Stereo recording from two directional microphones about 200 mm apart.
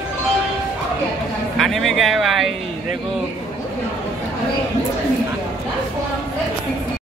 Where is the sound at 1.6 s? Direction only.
Centre (ahead or behind).